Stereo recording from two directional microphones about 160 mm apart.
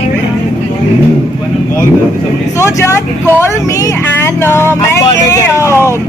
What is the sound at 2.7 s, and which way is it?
Speech, 15° left (ahead or behind).